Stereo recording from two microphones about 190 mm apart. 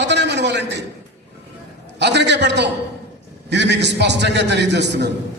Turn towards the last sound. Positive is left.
turn(degrees=-65)  # may be behind; listen again after turning